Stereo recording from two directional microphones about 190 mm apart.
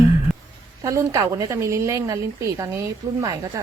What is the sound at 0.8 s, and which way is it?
Speech, 15° right (ahead or behind).